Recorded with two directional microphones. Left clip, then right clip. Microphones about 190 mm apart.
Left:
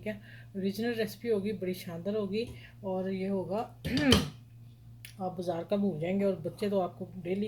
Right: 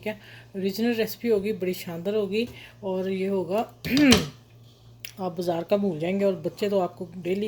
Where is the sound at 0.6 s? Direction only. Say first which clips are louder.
Right 7 dB; 20° right (ahead or behind).